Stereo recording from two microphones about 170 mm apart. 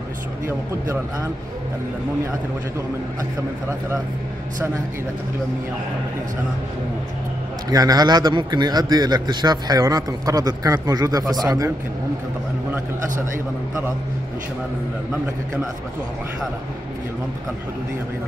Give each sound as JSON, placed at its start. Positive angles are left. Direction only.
{"t": 7.7, "sound": "a man's voice", "side_deg": -20}